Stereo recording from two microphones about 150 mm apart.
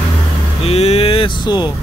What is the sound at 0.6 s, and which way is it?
Speech, 45° left (ahead or behind).